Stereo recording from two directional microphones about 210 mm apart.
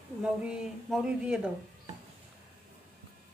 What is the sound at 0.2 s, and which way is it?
Speech, 5° right (ahead or behind).